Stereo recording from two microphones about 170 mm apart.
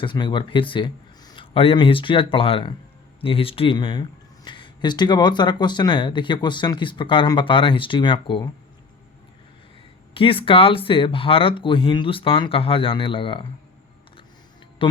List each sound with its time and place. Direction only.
0.0 s speech: 30° left (ahead or behind)
10.2 s speech: 30° left (ahead or behind)
14.8 s speech: 30° left (ahead or behind)